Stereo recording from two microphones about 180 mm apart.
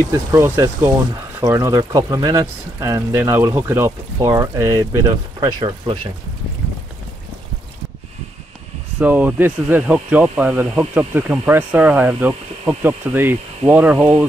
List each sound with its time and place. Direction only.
0.1 s speech: 15° right (ahead or behind)
9.0 s speech: 10° right (ahead or behind)